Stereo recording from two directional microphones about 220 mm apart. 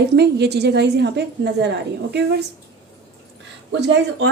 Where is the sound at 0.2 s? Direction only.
50° right (ahead or behind).